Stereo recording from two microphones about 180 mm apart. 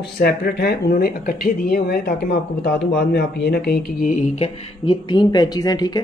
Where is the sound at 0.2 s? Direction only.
60° left (ahead or behind).